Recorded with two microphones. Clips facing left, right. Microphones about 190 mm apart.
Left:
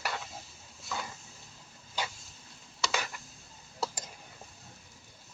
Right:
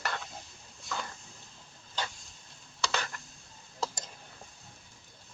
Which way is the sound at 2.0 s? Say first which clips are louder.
Left 1 dB; 10° left (ahead or behind).